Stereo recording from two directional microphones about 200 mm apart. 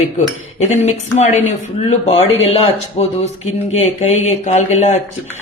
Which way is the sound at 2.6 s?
30° left (ahead or behind).